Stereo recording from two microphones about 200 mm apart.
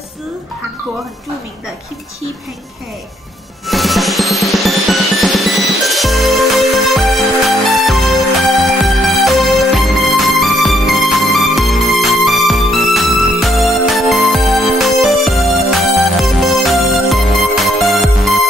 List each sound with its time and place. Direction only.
3.6 s music: centre (ahead or behind)